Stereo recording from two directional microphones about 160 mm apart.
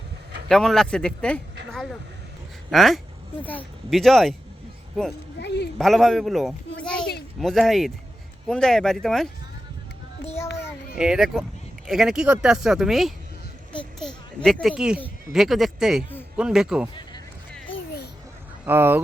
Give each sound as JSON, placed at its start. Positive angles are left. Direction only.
{"t": 0.4, "sound": "speech", "side_deg": 0}
{"t": 1.7, "sound": "vehicle", "side_deg": 0}
{"t": 2.6, "sound": "speech", "side_deg": 0}
{"t": 5.4, "sound": "a sound", "side_deg": 90}
{"t": 5.7, "sound": "speech", "side_deg": 0}
{"t": 10.9, "sound": "speech", "side_deg": -5}
{"t": 14.4, "sound": "speech", "side_deg": 0}
{"t": 18.6, "sound": "speech", "side_deg": -15}